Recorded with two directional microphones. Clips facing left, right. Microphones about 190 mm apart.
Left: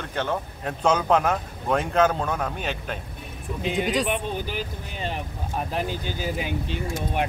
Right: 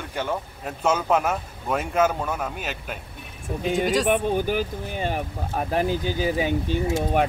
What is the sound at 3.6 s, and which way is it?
Speech, 45° right (ahead or behind).